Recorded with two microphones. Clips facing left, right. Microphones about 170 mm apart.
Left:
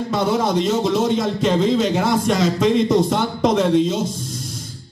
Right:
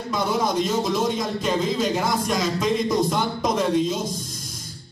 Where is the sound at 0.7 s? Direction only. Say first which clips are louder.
Left 5 dB; 65° left (ahead or behind).